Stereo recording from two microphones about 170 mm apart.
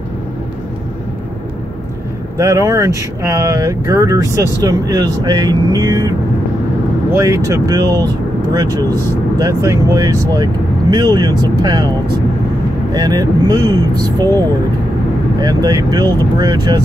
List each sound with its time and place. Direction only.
2.3 s speech: 20° right (ahead or behind)
12.9 s speech: 25° right (ahead or behind)
15.4 s speech: 20° right (ahead or behind)